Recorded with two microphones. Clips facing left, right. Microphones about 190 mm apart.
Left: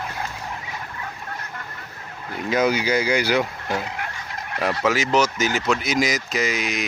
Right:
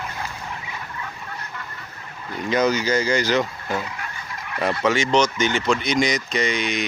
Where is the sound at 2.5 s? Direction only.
10° left (ahead or behind).